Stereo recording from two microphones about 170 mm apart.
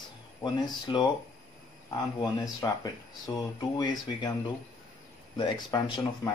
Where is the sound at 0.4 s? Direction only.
25° left (ahead or behind).